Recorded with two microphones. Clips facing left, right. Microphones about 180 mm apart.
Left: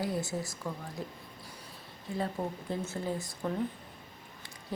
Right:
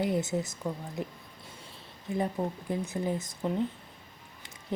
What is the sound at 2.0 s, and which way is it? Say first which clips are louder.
A woman's voice: right 3 dB; 15° right (ahead or behind).